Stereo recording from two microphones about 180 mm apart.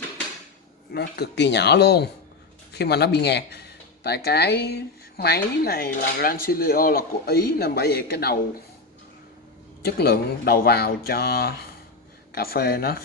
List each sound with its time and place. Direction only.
0.9 s speech: 65° left (ahead or behind)
9.8 s speech: 60° left (ahead or behind)